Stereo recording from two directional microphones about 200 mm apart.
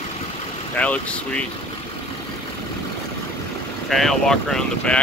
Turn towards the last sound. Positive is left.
turn(degrees=0)  # may be behind; listen again after turning